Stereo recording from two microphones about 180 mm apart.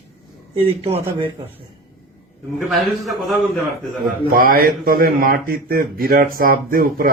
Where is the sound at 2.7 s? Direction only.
Centre (ahead or behind).